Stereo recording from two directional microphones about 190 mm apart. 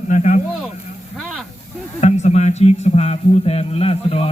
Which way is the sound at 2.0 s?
35° left (ahead or behind).